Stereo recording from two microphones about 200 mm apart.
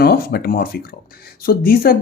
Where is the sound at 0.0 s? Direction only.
50° left (ahead or behind).